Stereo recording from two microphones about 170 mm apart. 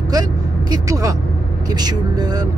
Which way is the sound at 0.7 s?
20° right (ahead or behind).